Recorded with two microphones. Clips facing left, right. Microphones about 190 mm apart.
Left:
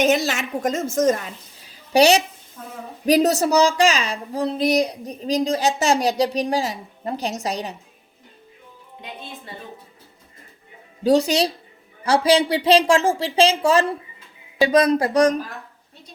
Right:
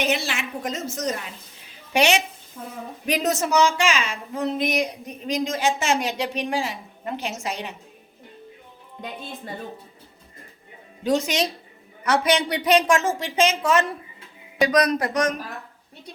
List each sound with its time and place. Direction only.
0.0 s a woman's voice: 45° left (ahead or behind)
1.9 s speech: 35° left (ahead or behind)
11.0 s speech: 35° left (ahead or behind)